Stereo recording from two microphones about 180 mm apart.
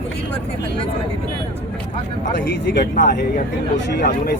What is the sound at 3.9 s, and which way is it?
Speech, 60° left (ahead or behind).